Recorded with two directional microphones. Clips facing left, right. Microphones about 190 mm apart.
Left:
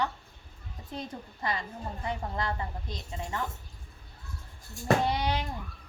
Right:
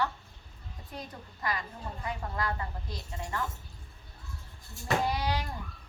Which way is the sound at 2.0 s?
25° left (ahead or behind).